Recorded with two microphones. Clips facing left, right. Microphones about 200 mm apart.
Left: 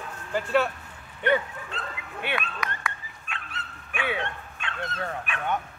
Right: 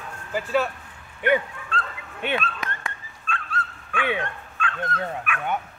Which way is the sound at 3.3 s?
20° left (ahead or behind).